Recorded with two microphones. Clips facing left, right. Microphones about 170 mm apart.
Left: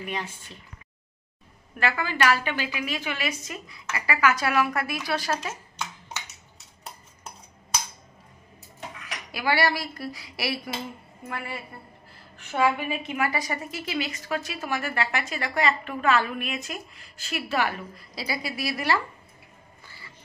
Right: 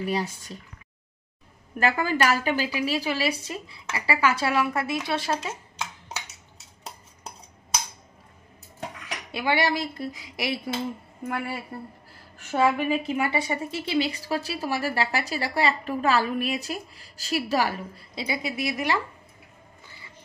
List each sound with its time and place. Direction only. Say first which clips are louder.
0.0 s a woman's voice: right 6 dB; 35° right (ahead or behind)
1.8 s a woman's voice: right 3 dB; 45° right (ahead or behind); by 5.5 s 25° right (ahead or behind)
9.0 s speech: even; 25° right (ahead or behind)
12.4 s a woman's voice: right 2 dB; 40° right (ahead or behind)
18.2 s a woman's voice: right 2 dB; 20° right (ahead or behind)